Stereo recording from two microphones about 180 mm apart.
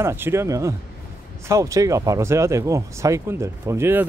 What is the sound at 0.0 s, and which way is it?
Speech, 15° right (ahead or behind).